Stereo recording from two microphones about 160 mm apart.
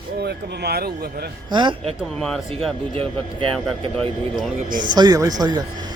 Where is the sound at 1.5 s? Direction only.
30° right (ahead or behind).